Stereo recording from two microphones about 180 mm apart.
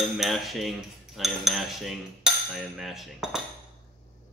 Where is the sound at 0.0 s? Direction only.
Centre (ahead or behind).